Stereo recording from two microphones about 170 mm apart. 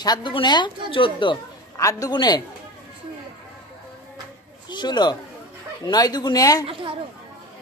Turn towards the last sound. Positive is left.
turn(degrees=-30)  # may be behind; listen again after turning